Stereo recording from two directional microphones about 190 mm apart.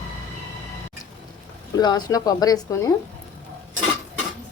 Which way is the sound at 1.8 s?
20° left (ahead or behind).